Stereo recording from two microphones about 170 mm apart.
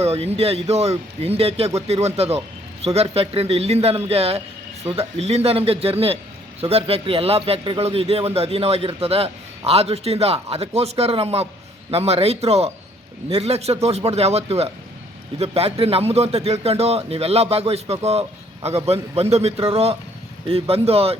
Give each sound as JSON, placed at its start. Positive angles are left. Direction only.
{"t": 0.0, "sound": "a man's voice", "side_deg": -35}